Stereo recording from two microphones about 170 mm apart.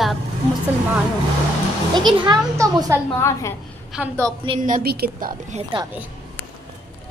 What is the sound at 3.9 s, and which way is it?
Speech, 15° right (ahead or behind).